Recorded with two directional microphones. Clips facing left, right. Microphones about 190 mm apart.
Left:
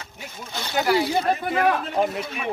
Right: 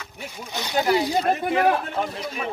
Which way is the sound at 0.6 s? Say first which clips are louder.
Even; 15° right (ahead or behind).